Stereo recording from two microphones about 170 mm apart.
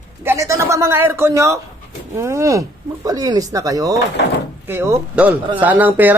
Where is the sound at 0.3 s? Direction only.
15° right (ahead or behind).